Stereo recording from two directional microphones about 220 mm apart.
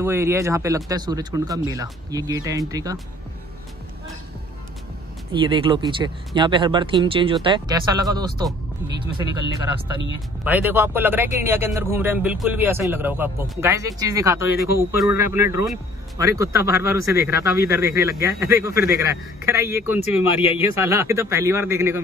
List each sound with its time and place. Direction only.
0.0 s speech: 10° right (ahead or behind)
5.3 s speech: 20° right (ahead or behind)
10.4 s speech: 10° right (ahead or behind)
20.0 s speech: 25° left (ahead or behind)
20.8 s speech: 10° right (ahead or behind)